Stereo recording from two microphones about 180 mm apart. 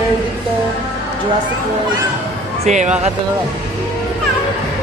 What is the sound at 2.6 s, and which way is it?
Speech, 40° right (ahead or behind).